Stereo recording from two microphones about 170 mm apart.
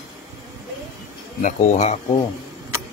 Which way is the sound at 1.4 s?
45° left (ahead or behind).